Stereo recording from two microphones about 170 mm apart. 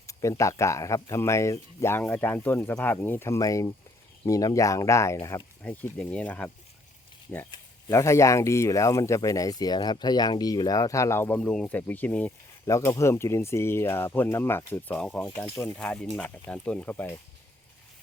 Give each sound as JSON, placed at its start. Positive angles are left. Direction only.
{"t": 0.1, "sound": "speech", "side_deg": 20}
{"t": 7.9, "sound": "speech", "side_deg": 15}